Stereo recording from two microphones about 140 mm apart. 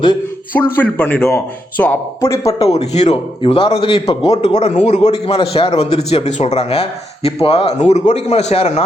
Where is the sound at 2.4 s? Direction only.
45° left (ahead or behind).